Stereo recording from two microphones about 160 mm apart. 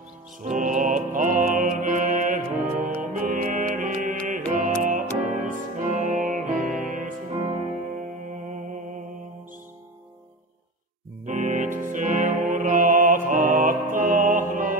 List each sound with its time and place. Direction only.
0.4 s music: 50° right (ahead or behind)
11.2 s music: 50° right (ahead or behind)